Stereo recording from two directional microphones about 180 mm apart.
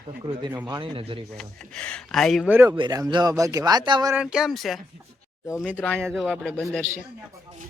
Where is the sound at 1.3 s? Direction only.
5° left (ahead or behind); by 4.1 s 25° right (ahead or behind).